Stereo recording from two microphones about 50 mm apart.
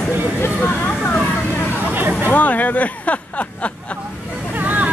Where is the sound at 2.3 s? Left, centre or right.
Left.